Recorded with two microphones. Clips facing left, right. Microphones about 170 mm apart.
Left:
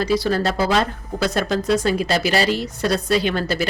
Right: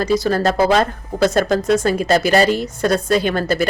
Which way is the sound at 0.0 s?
45° right (ahead or behind).